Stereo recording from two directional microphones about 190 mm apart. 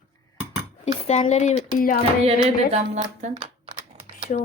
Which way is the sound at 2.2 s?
35° right (ahead or behind).